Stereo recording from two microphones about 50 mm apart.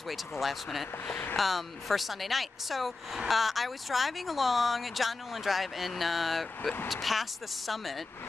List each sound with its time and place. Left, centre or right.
0.1 s speech: centre
1.0 s speech: left
1.3 s speech: centre